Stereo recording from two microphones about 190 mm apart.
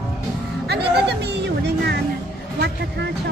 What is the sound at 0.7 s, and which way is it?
Music, 60° right (ahead or behind).